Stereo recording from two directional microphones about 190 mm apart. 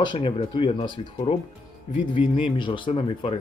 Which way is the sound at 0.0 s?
25° left (ahead or behind).